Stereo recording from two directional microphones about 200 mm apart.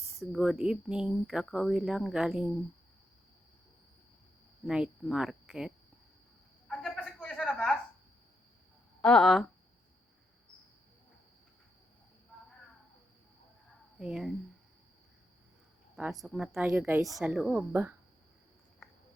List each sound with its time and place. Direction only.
0.2 s speech: centre (ahead or behind)
4.6 s speech: centre (ahead or behind)
6.7 s a sound: 5° left (ahead or behind)
9.0 s speech: 5° left (ahead or behind)
14.0 s speech: centre (ahead or behind)
16.0 s a woman's voice: centre (ahead or behind)